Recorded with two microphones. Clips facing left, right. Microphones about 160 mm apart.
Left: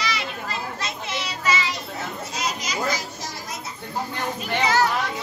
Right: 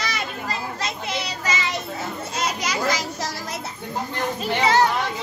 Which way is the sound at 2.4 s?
65° right (ahead or behind).